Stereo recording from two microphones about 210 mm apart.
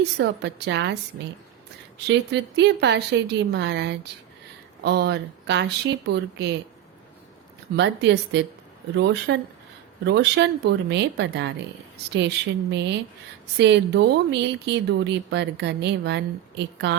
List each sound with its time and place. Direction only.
0.0 s speech: 55° right (ahead or behind)
2.0 s speech: 55° right (ahead or behind)
7.8 s speech: 55° right (ahead or behind)
12.7 s speech: 55° right (ahead or behind)